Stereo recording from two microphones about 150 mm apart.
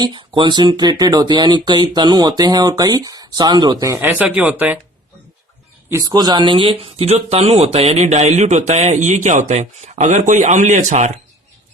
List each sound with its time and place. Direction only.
0.0 s speech: 30° right (ahead or behind); by 4.8 s 10° right (ahead or behind)
5.9 s speech: 25° right (ahead or behind); by 11.1 s 55° right (ahead or behind)